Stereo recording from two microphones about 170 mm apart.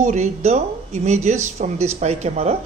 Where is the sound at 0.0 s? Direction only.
40° right (ahead or behind).